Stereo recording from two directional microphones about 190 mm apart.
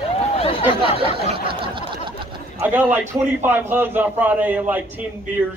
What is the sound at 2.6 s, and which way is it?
A man's voice, 10° right (ahead or behind).